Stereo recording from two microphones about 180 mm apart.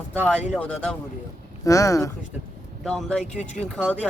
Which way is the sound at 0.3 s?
5° left (ahead or behind).